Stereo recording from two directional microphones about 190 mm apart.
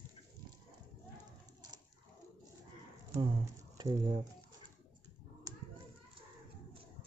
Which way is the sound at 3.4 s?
20° right (ahead or behind).